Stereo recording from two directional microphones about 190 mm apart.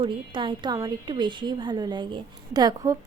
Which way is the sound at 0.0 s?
25° right (ahead or behind).